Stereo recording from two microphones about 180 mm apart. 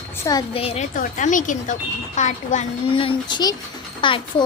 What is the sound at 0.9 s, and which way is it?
A woman's voice, 45° left (ahead or behind).